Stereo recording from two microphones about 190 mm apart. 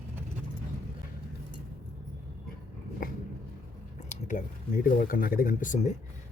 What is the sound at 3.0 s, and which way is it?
Dog, 45° left (ahead or behind).